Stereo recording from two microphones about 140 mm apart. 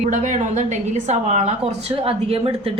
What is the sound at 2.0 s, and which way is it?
Speech, 45° right (ahead or behind).